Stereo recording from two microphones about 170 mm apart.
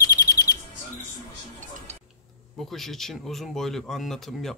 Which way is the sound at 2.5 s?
Centre (ahead or behind).